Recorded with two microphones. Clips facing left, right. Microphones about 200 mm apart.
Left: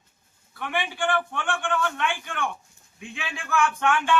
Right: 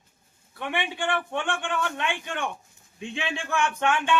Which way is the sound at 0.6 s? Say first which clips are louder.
Left 1 dB; 20° right (ahead or behind).